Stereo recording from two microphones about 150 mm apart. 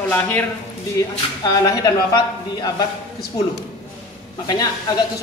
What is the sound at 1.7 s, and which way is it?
A man's voice, 25° left (ahead or behind).